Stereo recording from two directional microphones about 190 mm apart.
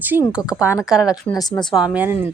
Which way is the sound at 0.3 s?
5° right (ahead or behind).